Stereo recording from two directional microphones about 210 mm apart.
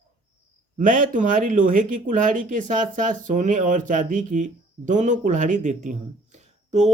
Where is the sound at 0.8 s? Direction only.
40° right (ahead or behind).